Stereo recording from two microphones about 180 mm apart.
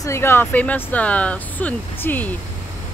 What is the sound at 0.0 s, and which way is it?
Speech, 15° left (ahead or behind).